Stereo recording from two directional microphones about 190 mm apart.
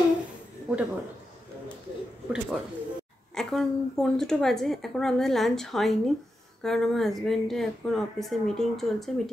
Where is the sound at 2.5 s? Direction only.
Centre (ahead or behind).